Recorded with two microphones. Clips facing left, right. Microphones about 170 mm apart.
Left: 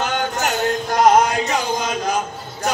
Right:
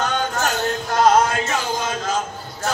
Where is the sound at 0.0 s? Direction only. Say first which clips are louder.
Even; 20° left (ahead or behind).